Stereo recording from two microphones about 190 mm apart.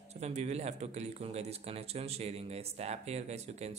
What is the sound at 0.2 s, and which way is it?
Speech, 35° right (ahead or behind).